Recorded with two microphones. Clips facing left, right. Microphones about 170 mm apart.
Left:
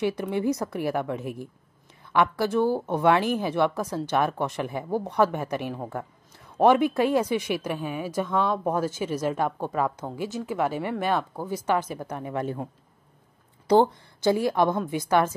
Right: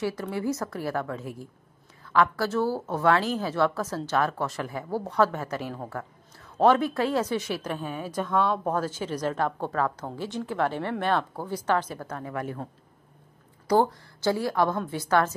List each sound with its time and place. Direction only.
0.0 s a woman's voice: 20° left (ahead or behind)
13.7 s a woman's voice: 20° left (ahead or behind)